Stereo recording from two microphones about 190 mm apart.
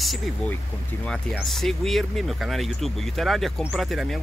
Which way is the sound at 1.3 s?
Centre (ahead or behind).